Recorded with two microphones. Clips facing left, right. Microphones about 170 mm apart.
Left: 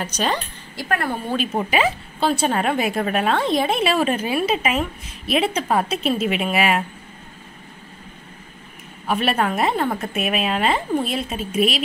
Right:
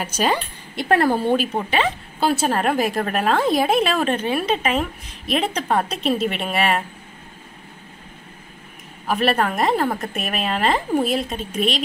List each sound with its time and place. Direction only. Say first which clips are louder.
0.0 s a woman's voice: right 2 dB; 5° right (ahead or behind)
0.7 s speech: right 6 dB; 30° right (ahead or behind)
1.3 s a woman's voice: right 3 dB; 5° right (ahead or behind)
1.7 s a woman's voice: left 1 dB; 10° left (ahead or behind)
2.1 s a woman's voice: right 1 dB; 5° right (ahead or behind)
9.0 s a woman's voice: right 1 dB; centre (ahead or behind)